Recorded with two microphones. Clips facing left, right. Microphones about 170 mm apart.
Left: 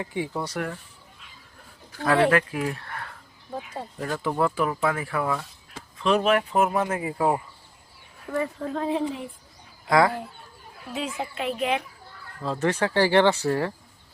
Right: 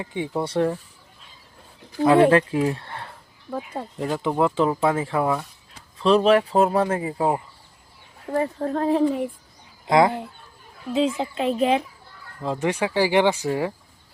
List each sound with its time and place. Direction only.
0.0 s speech: 25° right (ahead or behind)
1.9 s speech: 15° right (ahead or behind)
8.4 s speech: 40° right (ahead or behind)
9.8 s speech: 25° right (ahead or behind)
12.4 s speech: 15° right (ahead or behind)